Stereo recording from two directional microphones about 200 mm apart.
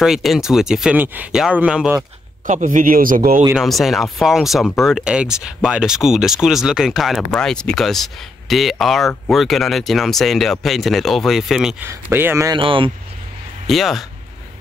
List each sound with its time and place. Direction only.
0.0 s speech: centre (ahead or behind)
2.4 s a man's voice: 40° right (ahead or behind)
3.5 s speech: centre (ahead or behind)
12.5 s speech: 25° right (ahead or behind)
13.7 s speech: centre (ahead or behind)